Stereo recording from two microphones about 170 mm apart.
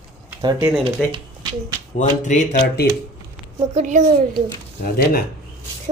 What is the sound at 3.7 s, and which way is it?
Speech, 45° right (ahead or behind).